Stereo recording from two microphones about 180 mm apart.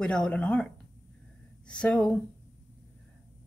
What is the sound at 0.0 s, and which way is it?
A woman's voice, 5° left (ahead or behind).